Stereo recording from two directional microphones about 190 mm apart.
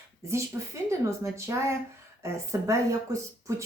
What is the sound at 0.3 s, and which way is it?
Speech, 15° right (ahead or behind).